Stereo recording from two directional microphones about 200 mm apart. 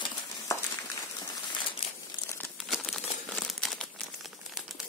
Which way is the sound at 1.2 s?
25° left (ahead or behind).